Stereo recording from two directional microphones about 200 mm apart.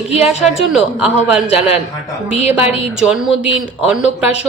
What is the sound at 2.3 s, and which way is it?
Speech, 30° left (ahead or behind).